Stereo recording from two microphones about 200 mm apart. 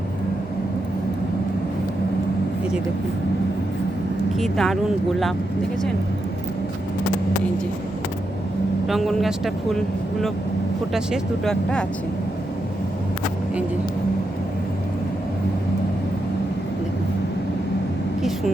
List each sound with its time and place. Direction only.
4.4 s speech: centre (ahead or behind)
8.9 s speech: centre (ahead or behind)
18.2 s speech: centre (ahead or behind)